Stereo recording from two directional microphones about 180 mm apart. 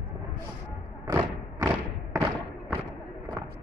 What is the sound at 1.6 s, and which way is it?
Thump, 15° right (ahead or behind).